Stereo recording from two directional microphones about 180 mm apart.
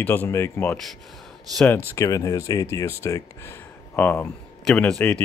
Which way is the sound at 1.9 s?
15° left (ahead or behind).